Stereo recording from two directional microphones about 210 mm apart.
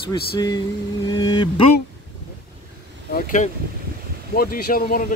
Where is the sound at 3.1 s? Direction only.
35° left (ahead or behind).